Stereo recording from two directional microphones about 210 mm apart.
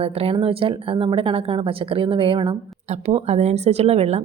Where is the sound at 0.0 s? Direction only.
30° right (ahead or behind).